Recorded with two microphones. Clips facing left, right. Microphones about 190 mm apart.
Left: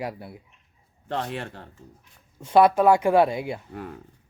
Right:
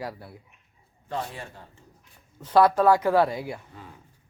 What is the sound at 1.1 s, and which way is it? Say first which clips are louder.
Speech: left 3 dB; 70° left (ahead or behind).